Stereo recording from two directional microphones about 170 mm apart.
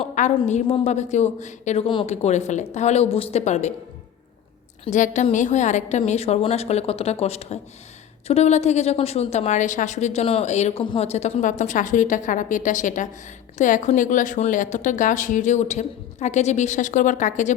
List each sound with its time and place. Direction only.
0.0 s a sound: 45° left (ahead or behind)
0.3 s a woman's voice: 40° left (ahead or behind)
4.9 s a woman's voice: 45° left (ahead or behind)